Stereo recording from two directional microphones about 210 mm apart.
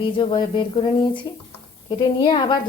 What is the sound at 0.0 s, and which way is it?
A woman's voice, 25° left (ahead or behind).